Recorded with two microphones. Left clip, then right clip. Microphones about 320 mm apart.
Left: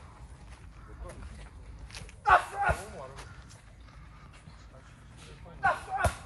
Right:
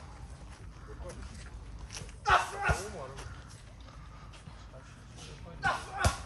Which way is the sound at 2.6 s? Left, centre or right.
Centre.